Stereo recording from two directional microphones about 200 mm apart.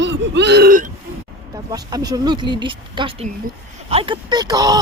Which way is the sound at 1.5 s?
20° right (ahead or behind).